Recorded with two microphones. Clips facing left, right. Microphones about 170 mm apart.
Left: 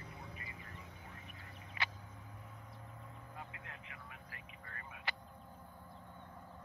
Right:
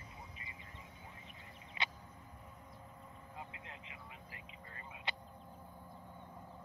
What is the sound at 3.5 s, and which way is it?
Vehicle, 20° right (ahead or behind).